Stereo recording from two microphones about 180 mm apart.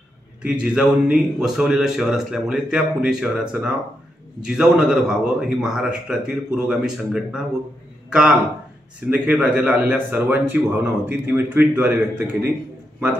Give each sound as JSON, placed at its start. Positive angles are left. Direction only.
{"t": 0.4, "sound": "a man's voice", "side_deg": -5}